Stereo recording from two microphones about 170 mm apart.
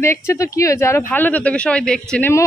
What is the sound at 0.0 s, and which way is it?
Speech, 15° left (ahead or behind).